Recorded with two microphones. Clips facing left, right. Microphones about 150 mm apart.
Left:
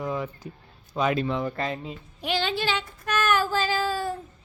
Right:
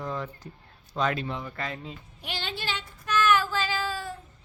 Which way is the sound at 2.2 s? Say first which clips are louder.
Left 9 dB; 90° left.